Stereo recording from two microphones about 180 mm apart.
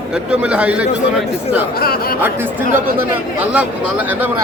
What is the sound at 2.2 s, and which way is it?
Speech, 10° right (ahead or behind).